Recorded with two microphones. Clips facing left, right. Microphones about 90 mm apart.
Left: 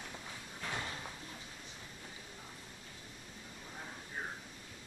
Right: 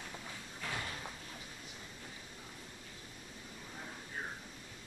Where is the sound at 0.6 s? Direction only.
15° left (ahead or behind).